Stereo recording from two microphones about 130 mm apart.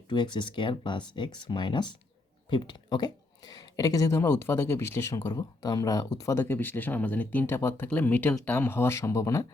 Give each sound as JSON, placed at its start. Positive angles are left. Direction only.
{"t": 0.1, "sound": "speech", "side_deg": 35}